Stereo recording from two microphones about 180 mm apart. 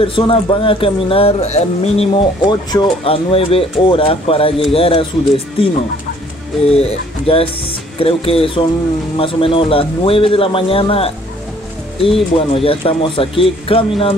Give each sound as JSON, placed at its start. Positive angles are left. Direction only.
{"t": 0.0, "sound": "speech", "side_deg": 30}
{"t": 2.4, "sound": "speech", "side_deg": 25}